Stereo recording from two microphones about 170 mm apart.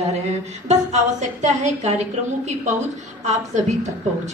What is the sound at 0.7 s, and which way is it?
A woman's voice, 45° right (ahead or behind).